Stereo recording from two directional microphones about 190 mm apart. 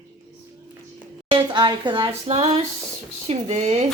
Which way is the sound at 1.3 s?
25° right (ahead or behind).